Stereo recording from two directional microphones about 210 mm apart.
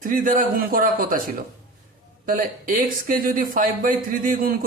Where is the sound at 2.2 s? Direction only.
40° right (ahead or behind).